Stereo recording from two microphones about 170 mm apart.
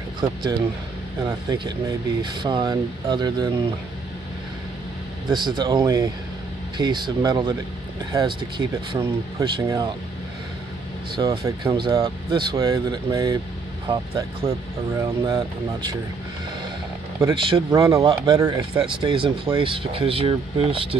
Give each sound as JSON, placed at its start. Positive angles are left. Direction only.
{"t": 0.2, "sound": "speech", "side_deg": -25}
{"t": 5.3, "sound": "speech", "side_deg": -25}
{"t": 11.1, "sound": "speech", "side_deg": -20}
{"t": 15.0, "sound": "speech", "side_deg": -15}
{"t": 17.3, "sound": "speech", "side_deg": -30}